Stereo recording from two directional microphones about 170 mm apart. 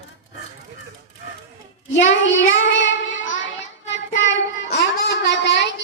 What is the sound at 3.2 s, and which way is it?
Child singing, 90° left.